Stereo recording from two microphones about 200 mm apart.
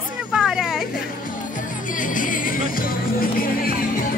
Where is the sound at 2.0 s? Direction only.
40° left (ahead or behind).